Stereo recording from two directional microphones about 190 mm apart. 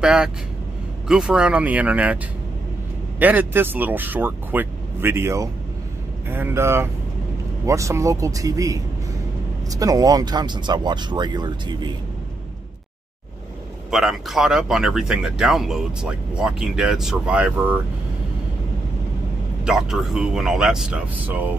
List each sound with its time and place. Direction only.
0.0 s speech: 5° right (ahead or behind)
3.2 s speech: 10° right (ahead or behind)
13.8 s speech: centre (ahead or behind)
19.6 s speech: 5° right (ahead or behind)